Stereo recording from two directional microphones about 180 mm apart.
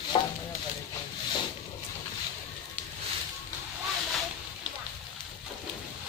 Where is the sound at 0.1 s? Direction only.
30° left (ahead or behind).